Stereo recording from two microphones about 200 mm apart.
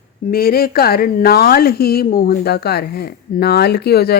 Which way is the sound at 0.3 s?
50° left (ahead or behind).